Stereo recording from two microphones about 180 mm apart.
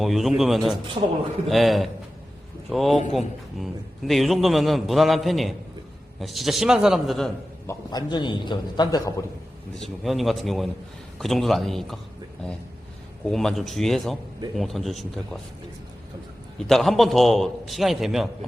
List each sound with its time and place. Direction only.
0.0 s a man's voice: centre (ahead or behind)
7.7 s a man's voice: 20° left (ahead or behind)
9.8 s a man's voice: centre (ahead or behind)
13.2 s a man's voice: centre (ahead or behind)
16.6 s a man's voice: centre (ahead or behind)